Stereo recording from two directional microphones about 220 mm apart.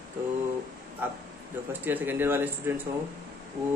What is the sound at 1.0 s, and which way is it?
Speech, 10° right (ahead or behind).